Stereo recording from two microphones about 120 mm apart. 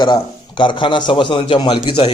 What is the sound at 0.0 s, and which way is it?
A man's voice, 40° left (ahead or behind).